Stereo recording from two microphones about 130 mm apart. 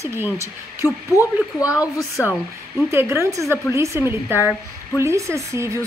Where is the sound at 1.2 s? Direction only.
25° left (ahead or behind).